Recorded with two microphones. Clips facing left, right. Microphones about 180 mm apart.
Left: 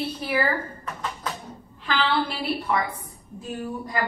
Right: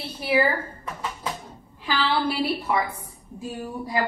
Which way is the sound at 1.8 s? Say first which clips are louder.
Even; 10° right (ahead or behind).